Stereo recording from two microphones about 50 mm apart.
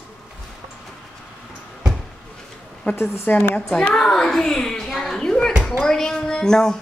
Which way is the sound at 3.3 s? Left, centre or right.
Left.